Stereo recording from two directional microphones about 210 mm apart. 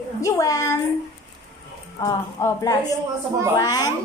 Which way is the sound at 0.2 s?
15° left (ahead or behind).